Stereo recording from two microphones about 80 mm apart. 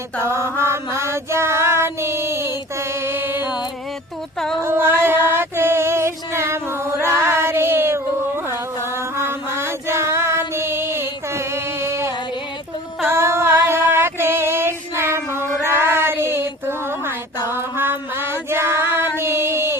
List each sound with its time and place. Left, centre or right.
0.3 s mantra: right
0.6 s child singing: right
4.6 s music: right
13.1 s a sound: right
17.5 s female singing: right